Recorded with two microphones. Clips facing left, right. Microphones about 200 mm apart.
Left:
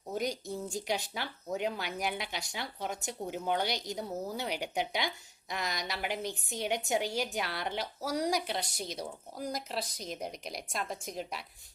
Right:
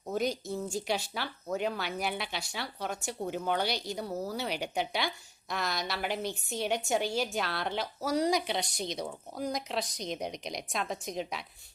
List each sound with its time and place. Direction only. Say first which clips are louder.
0.1 s a woman's voice: right 3 dB; 15° left (ahead or behind)